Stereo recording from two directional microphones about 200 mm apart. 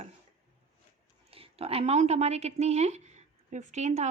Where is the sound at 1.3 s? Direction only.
30° right (ahead or behind).